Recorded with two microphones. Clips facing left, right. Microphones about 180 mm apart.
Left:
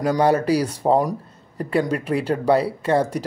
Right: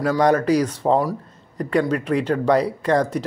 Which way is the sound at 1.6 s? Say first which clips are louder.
Right 1 dB; 30° left (ahead or behind).